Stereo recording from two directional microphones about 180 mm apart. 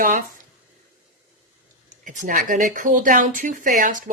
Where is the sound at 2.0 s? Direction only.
45° right (ahead or behind).